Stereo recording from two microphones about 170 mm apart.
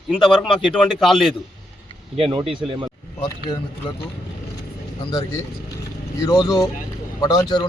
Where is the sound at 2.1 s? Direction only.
35° right (ahead or behind).